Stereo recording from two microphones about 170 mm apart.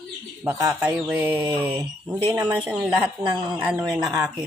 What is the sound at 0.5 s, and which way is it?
Speech, 15° right (ahead or behind).